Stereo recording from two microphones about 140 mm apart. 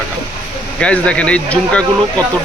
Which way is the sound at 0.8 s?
10° left (ahead or behind).